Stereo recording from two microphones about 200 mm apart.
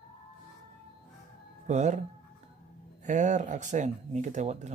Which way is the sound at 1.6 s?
35° right (ahead or behind).